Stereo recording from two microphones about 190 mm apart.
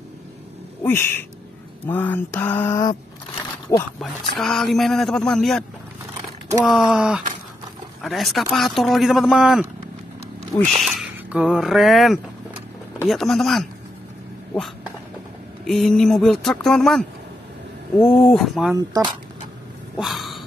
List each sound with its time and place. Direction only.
0.8 s speech: 10° left (ahead or behind)
4.0 s speech: centre (ahead or behind)
10.5 s speech: 10° left (ahead or behind)
11.0 s speech: 5° right (ahead or behind)
15.6 s speech: centre (ahead or behind)
18.8 s speech: 20° right (ahead or behind)
20.0 s a sound: centre (ahead or behind)